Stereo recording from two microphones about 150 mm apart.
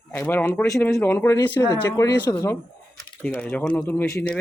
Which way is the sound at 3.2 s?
10° left (ahead or behind).